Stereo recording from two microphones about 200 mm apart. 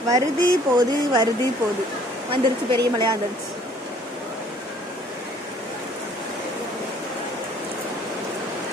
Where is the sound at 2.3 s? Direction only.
25° right (ahead or behind).